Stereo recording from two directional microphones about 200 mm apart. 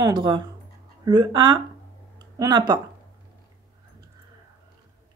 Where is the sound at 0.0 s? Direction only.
20° right (ahead or behind).